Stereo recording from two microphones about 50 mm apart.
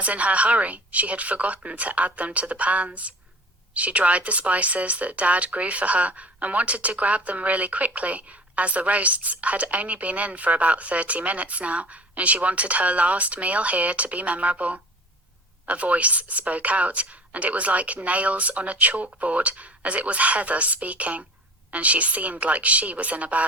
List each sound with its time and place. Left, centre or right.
0.0 s speech: right